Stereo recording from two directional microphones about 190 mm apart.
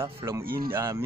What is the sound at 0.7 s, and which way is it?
Speech, 15° right (ahead or behind).